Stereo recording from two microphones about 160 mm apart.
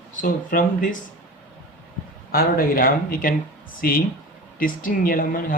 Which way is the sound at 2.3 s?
65° left (ahead or behind).